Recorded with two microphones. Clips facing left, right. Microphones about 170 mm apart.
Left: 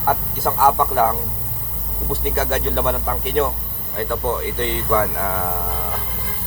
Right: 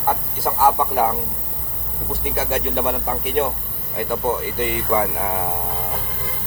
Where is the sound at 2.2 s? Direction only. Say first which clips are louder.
Left 1 dB; 10° right (ahead or behind).